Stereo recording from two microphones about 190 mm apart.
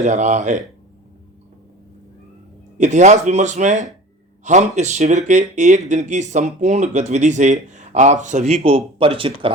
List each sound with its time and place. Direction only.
0.0 s speech: 40° right (ahead or behind)
2.7 s speech: 40° right (ahead or behind)